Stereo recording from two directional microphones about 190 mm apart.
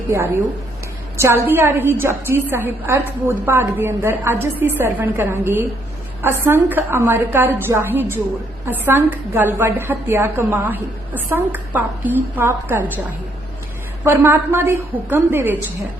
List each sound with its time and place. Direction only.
1.1 s a woman's voice: 15° right (ahead or behind)